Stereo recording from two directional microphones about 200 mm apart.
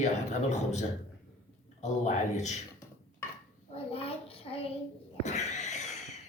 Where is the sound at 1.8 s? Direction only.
35° left (ahead or behind).